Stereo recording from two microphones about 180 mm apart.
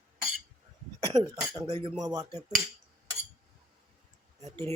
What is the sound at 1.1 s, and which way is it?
Speech, 20° right (ahead or behind).